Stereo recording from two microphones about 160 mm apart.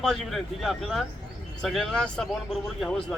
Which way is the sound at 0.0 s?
5° left (ahead or behind).